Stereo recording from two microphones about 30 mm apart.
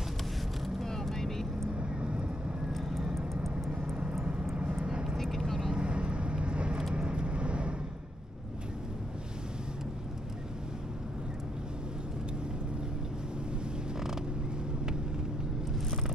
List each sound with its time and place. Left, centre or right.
1.1 s vehicle: centre
1.7 s vehicle: right
2.7 s vehicle: centre
4.2 s vehicle: right
4.8 s vehicle: right
5.1 s vehicle: centre
5.7 s vehicle: right